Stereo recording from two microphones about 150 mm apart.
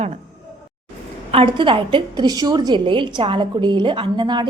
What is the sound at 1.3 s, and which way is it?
A woman's voice, 35° right (ahead or behind).